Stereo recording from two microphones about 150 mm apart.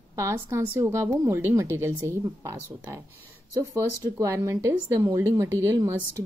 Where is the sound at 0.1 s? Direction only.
20° right (ahead or behind).